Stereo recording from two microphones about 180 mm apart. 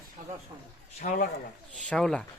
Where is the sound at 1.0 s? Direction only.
45° left (ahead or behind).